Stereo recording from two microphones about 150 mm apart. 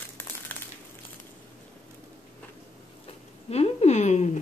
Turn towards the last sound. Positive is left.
turn(degrees=50)  # may be behind; listen again after turning